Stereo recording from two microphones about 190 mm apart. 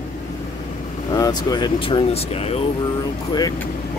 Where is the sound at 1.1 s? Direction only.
20° left (ahead or behind).